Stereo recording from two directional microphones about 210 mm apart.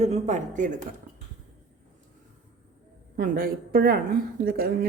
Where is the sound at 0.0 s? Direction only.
35° right (ahead or behind).